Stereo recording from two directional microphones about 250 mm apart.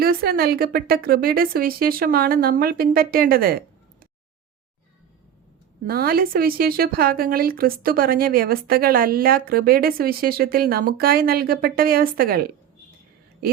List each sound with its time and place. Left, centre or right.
0.0 s speech: right
5.8 s speech: right